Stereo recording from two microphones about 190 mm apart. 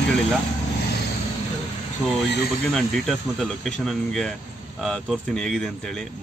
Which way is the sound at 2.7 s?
Centre (ahead or behind).